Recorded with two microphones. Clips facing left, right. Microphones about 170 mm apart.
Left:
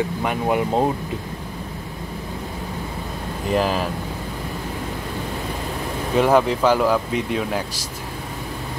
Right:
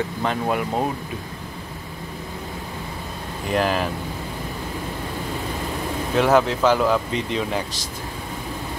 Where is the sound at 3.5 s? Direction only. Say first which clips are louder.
Left 1 dB; centre (ahead or behind).